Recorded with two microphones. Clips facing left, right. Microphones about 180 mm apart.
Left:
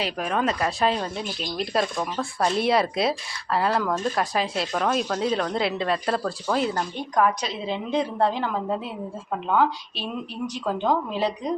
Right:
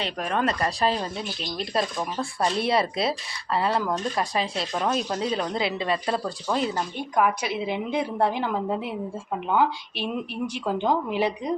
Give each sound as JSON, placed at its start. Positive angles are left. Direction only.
{"t": 0.0, "sound": "speech", "side_deg": 0}